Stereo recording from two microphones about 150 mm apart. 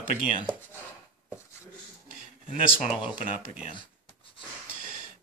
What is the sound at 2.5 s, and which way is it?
Speech, 45° left (ahead or behind).